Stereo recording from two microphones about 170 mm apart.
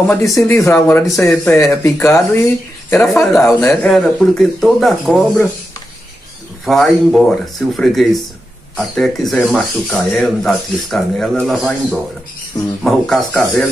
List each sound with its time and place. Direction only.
0.1 s speech: 20° left (ahead or behind); by 5.5 s centre (ahead or behind)
6.6 s speech: centre (ahead or behind)